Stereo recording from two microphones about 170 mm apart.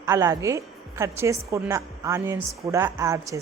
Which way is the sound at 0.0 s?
15° right (ahead or behind).